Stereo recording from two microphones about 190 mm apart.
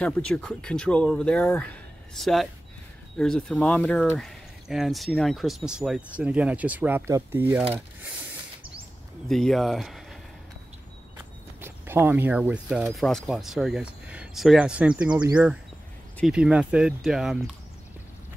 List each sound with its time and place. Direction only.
0.0 s speech: 5° left (ahead or behind)
9.3 s speech: centre (ahead or behind)
11.6 s speech: 10° right (ahead or behind)